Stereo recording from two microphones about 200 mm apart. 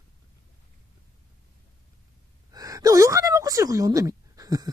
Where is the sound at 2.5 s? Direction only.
15° right (ahead or behind).